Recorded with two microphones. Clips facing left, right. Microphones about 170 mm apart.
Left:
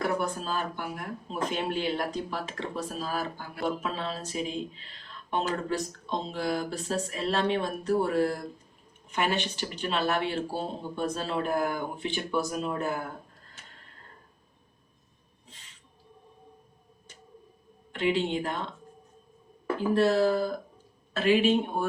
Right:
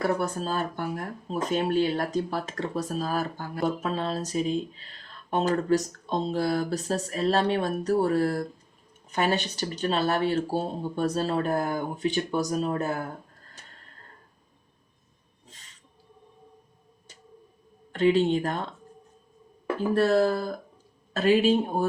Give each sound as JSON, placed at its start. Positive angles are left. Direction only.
{"t": 0.2, "sound": "speech", "side_deg": -40}
{"t": 17.9, "sound": "speech", "side_deg": -40}
{"t": 19.9, "sound": "speech", "side_deg": -45}